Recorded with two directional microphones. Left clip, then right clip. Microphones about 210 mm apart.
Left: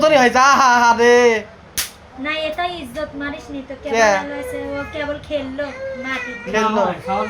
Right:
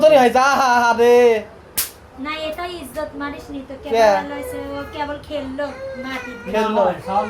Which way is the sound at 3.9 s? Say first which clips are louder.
Right 1 dB; centre (ahead or behind).